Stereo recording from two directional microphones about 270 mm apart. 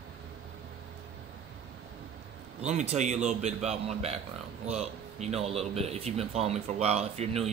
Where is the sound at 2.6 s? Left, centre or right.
Right.